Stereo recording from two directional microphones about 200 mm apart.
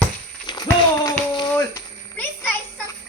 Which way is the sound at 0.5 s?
20° left (ahead or behind).